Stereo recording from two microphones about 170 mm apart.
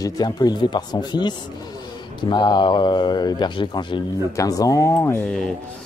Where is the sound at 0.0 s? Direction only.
25° left (ahead or behind).